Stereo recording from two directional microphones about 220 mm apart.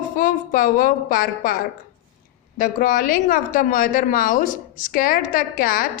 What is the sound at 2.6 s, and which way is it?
A woman's voice, 40° left (ahead or behind).